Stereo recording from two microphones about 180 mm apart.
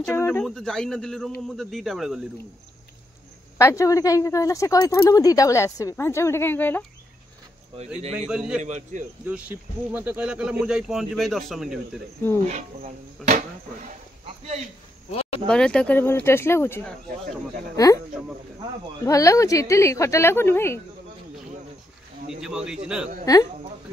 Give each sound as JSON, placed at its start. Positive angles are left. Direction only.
{"t": 0.2, "sound": "speech", "side_deg": 5}
{"t": 3.5, "sound": "speech", "side_deg": 15}
{"t": 8.3, "sound": "speech", "side_deg": -5}
{"t": 8.6, "sound": "a man's voice", "side_deg": -40}
{"t": 9.2, "sound": "speech", "side_deg": -10}
{"t": 13.2, "sound": "speech", "side_deg": 0}
{"t": 15.0, "sound": "a sound", "side_deg": 30}
{"t": 15.4, "sound": "speech", "side_deg": 5}
{"t": 19.0, "sound": "speech", "side_deg": 20}
{"t": 22.4, "sound": "speech", "side_deg": -5}
{"t": 23.3, "sound": "speech", "side_deg": 20}